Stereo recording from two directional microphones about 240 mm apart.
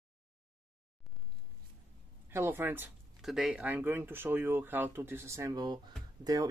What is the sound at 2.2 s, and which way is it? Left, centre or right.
Speech, centre.